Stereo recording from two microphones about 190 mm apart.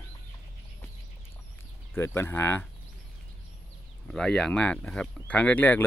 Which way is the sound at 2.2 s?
10° left (ahead or behind).